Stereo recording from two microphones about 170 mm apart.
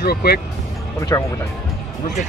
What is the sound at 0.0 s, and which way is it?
Speech, 65° left (ahead or behind).